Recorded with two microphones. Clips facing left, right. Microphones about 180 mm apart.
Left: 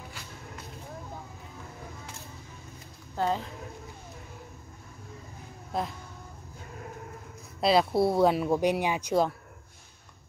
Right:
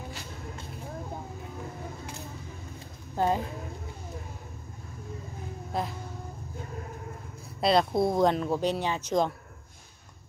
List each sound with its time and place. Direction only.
3.2 s speech: 15° right (ahead or behind)
5.7 s speech: centre (ahead or behind)
7.6 s speech: 5° left (ahead or behind)